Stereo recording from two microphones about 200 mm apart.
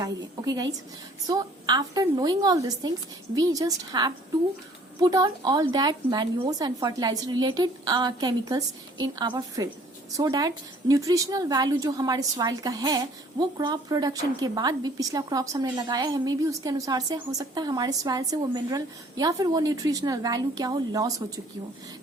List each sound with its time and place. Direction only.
0.0 s a woman's voice: 20° right (ahead or behind)